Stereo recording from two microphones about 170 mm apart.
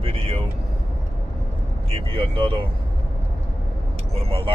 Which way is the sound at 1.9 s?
35° right (ahead or behind).